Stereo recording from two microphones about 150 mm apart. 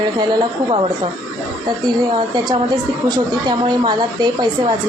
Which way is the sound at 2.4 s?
25° right (ahead or behind).